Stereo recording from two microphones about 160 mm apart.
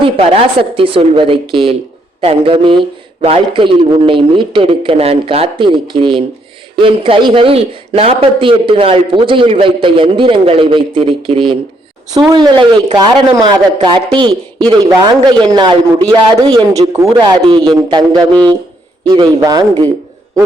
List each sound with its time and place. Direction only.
0.0 s a man's voice: 35° right (ahead or behind)